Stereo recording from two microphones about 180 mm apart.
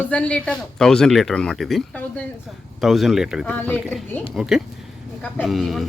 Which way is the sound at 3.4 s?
10° left (ahead or behind).